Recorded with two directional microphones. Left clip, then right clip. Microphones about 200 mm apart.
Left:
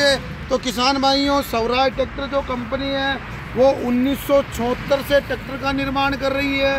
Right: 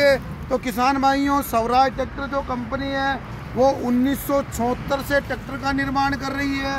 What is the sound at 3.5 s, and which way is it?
Speech, 5° left (ahead or behind).